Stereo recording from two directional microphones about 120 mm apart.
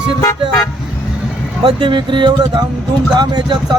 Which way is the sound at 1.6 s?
40° right (ahead or behind).